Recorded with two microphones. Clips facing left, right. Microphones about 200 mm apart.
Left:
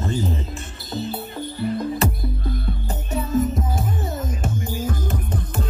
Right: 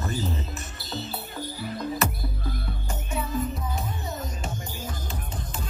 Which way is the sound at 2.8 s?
40° left (ahead or behind).